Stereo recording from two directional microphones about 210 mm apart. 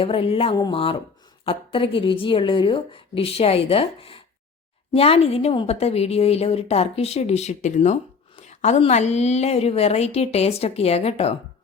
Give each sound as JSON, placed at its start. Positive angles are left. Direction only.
{"t": 0.0, "sound": "a woman's voice", "side_deg": 25}